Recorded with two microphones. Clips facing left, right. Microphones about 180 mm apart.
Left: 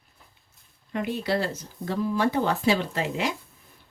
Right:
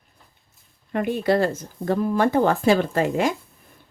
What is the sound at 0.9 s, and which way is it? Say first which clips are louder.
Speech: right 6 dB; 50° right (ahead or behind).